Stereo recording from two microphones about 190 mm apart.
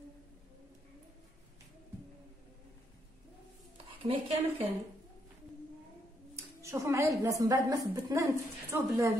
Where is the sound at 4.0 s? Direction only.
30° right (ahead or behind).